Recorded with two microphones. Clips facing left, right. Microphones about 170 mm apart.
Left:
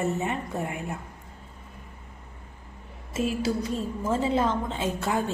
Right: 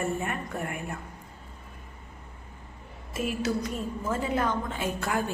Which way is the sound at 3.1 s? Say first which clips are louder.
Left 2 dB; 30° left (ahead or behind).